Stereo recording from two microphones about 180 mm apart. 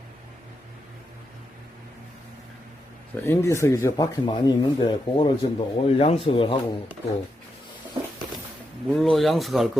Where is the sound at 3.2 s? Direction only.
15° left (ahead or behind); by 6.5 s 30° left (ahead or behind).